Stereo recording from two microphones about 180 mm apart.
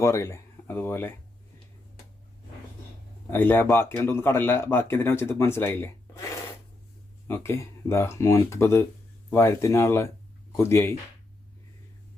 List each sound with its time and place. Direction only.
0.0 s speech: 15° left (ahead or behind)
3.2 s speech: 10° left (ahead or behind)